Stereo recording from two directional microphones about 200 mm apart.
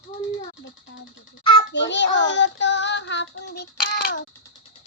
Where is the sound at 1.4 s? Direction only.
20° left (ahead or behind).